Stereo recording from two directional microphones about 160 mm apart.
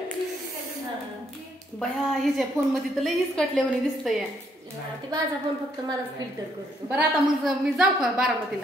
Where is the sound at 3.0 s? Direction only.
Centre (ahead or behind).